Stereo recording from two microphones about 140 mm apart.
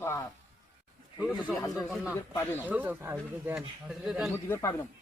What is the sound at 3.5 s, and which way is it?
Speech, 5° right (ahead or behind).